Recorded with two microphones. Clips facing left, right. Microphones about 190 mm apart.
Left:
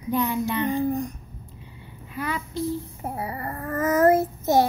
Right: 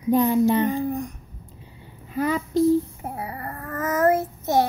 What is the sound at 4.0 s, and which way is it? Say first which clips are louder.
Child singing: left 1 dB; 5° left (ahead or behind).